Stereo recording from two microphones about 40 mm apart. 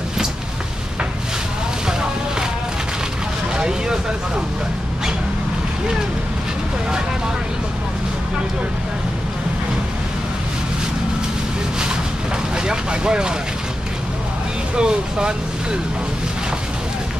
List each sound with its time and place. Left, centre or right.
3.5 s vehicle: centre
12.6 s vehicle: centre
14.8 s vehicle: right